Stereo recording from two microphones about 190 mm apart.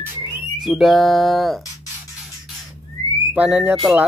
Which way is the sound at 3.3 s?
5° right (ahead or behind).